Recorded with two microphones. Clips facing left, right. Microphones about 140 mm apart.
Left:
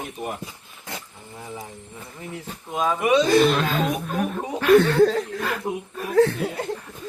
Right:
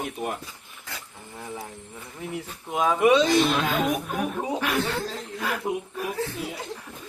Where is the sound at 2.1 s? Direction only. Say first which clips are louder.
Right 2 dB; 5° right (ahead or behind).